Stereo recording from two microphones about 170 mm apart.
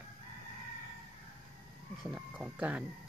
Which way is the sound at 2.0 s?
10° right (ahead or behind).